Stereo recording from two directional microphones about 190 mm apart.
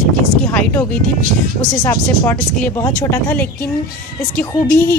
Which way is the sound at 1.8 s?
20° left (ahead or behind).